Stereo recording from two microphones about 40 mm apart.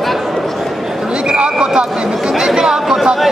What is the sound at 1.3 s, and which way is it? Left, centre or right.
Speech, centre.